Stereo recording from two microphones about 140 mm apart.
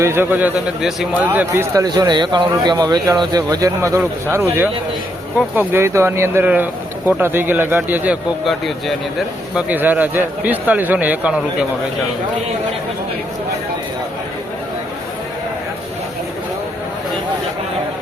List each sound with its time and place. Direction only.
0.0 s a man's voice: 15° right (ahead or behind)
1.3 s a man's voice: 15° right (ahead or behind)
8.4 s a man's voice: centre (ahead or behind)